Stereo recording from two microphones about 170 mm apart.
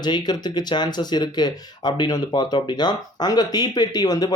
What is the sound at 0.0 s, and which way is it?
Speech, 25° left (ahead or behind).